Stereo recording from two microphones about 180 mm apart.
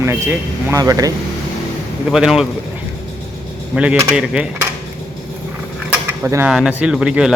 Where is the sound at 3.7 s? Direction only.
5° right (ahead or behind).